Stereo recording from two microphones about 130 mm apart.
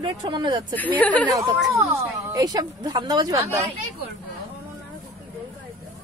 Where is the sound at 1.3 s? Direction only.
30° right (ahead or behind).